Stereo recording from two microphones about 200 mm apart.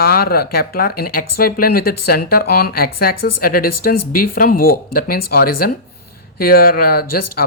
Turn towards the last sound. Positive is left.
turn(degrees=50)  # may be behind; listen again after turning